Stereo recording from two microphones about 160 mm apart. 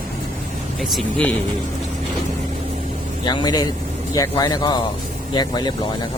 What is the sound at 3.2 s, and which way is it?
Speech, 25° left (ahead or behind).